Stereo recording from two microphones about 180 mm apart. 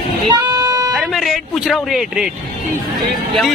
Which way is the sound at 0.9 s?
Centre (ahead or behind).